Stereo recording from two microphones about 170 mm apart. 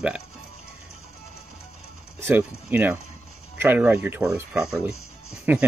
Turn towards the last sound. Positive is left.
turn(degrees=-10)  # may be behind; listen again after turning